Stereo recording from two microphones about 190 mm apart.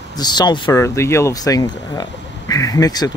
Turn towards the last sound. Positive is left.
turn(degrees=20)  # may be behind; listen again after turning